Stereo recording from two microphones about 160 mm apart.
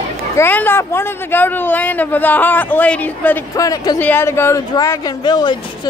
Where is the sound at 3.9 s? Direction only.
10° left (ahead or behind).